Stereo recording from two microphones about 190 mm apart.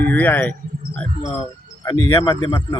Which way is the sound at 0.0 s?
10° left (ahead or behind).